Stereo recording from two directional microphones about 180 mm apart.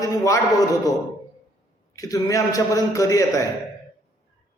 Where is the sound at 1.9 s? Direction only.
20° left (ahead or behind).